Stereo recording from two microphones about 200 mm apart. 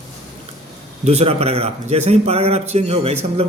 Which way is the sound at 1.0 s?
30° right (ahead or behind).